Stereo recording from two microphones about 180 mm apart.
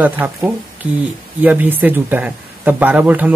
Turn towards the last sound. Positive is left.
turn(degrees=-10)  # may be behind; listen again after turning